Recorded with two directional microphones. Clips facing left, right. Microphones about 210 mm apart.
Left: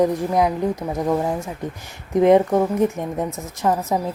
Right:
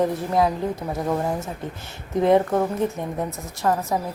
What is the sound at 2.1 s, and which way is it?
Speech, 20° left (ahead or behind).